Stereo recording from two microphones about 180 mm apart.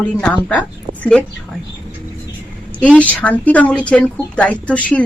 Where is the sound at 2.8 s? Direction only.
5° left (ahead or behind).